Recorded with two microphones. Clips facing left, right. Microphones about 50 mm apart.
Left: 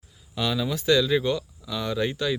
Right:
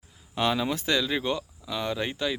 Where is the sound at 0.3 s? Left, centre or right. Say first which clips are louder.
Right 1 dB; right.